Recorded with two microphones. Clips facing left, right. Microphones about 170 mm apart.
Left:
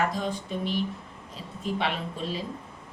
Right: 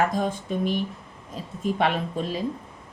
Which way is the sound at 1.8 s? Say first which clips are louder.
Right 6 dB; 50° right (ahead or behind).